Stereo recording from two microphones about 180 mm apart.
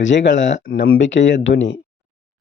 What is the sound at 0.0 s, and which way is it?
Speech, 90° left.